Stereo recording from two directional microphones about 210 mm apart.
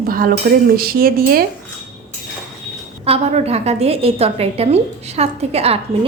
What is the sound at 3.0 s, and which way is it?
A woman's voice, 30° right (ahead or behind).